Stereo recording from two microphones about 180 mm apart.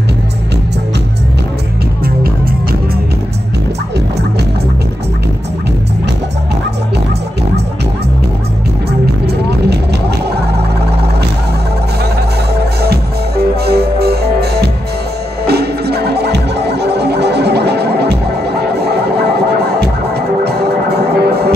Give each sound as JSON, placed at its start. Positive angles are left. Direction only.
{"t": 9.2, "sound": "vehicle", "side_deg": -65}
{"t": 12.5, "sound": "music", "side_deg": -65}
{"t": 19.6, "sound": "music", "side_deg": -65}